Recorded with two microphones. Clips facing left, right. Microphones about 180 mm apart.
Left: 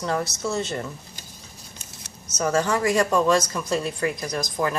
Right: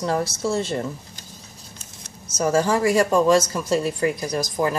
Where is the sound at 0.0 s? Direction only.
30° right (ahead or behind).